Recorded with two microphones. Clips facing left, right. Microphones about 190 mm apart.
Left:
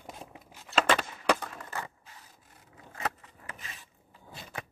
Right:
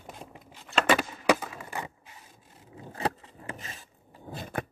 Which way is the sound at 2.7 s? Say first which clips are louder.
Right 5 dB; 30° right (ahead or behind).